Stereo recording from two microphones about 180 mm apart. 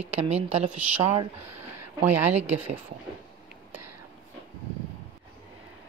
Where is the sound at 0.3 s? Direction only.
35° right (ahead or behind).